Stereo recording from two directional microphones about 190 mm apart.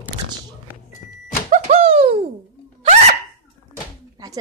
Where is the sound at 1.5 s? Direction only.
30° right (ahead or behind).